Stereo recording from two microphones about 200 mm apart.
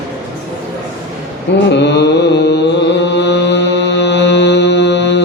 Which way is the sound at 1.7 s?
60° left (ahead or behind).